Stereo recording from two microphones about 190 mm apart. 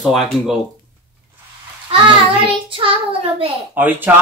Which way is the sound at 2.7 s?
30° right (ahead or behind).